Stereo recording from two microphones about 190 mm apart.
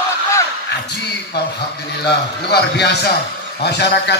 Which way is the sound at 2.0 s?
60° left (ahead or behind).